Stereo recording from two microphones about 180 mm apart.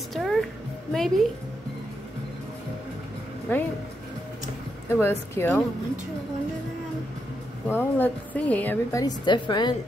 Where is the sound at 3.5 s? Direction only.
10° left (ahead or behind).